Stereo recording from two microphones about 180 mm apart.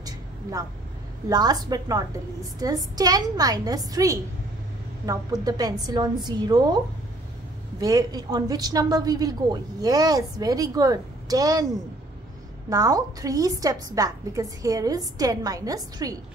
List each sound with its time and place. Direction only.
0.0 s vehicle: 20° right (ahead or behind)
1.3 s a woman's voice: 20° right (ahead or behind)
7.8 s a woman's voice: 20° right (ahead or behind)
12.6 s a woman's voice: 20° right (ahead or behind)